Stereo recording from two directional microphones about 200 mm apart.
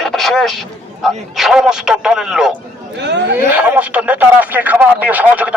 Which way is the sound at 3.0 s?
60° right (ahead or behind).